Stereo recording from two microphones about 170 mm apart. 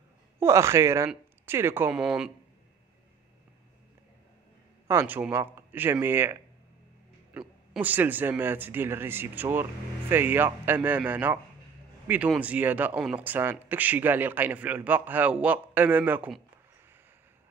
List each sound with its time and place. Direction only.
0.4 s speech: 15° right (ahead or behind)
4.8 s speech: 10° right (ahead or behind)